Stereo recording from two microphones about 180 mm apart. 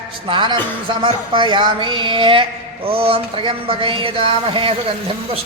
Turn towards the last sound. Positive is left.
turn(degrees=-30)  # may be behind; listen again after turning